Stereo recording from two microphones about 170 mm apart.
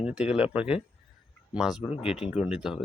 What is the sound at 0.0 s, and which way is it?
Speech, 5° right (ahead or behind).